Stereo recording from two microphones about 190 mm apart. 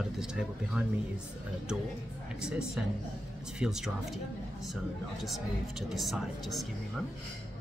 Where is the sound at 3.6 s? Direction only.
Centre (ahead or behind).